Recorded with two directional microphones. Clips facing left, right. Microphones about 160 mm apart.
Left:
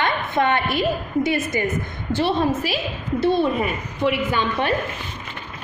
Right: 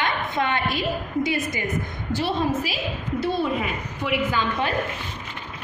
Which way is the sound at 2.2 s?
65° left (ahead or behind).